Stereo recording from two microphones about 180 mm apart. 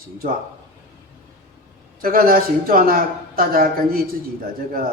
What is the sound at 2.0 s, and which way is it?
Speech, 55° right (ahead or behind).